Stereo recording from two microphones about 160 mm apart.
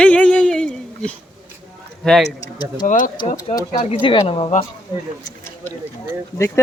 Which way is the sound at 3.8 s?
35° left (ahead or behind).